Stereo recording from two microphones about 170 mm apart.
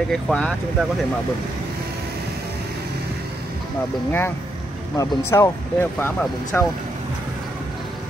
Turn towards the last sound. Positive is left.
turn(degrees=10)  # may be behind; listen again after turning